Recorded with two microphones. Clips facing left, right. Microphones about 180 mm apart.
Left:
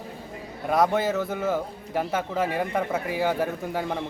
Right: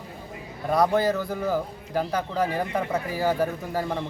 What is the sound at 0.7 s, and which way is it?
A man's voice, centre (ahead or behind).